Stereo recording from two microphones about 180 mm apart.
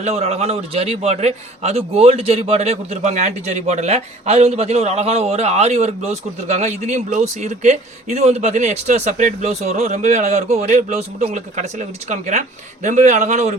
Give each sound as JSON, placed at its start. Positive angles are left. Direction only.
{"t": 0.0, "sound": "a man's voice", "side_deg": -35}